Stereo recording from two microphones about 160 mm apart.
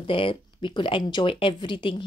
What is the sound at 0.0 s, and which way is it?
Speech, 35° left (ahead or behind).